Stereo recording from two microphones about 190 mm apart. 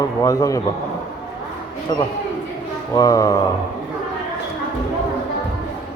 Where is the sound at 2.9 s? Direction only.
20° left (ahead or behind).